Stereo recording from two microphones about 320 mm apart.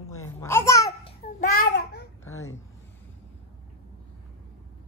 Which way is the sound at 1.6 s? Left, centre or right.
Left.